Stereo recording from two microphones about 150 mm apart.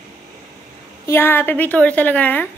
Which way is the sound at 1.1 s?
15° left (ahead or behind).